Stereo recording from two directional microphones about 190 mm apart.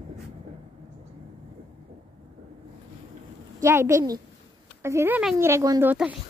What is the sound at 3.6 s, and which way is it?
Speech, 15° right (ahead or behind).